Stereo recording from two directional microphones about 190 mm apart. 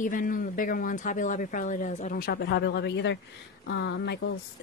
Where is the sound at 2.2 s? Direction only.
55° left (ahead or behind).